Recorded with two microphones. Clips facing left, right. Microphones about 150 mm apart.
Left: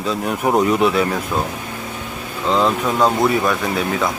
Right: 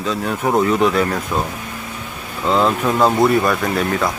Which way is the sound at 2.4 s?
Centre (ahead or behind).